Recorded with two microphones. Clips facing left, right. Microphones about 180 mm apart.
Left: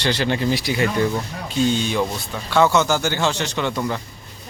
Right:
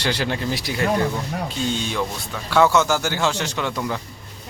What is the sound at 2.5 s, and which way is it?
Speech, 5° right (ahead or behind).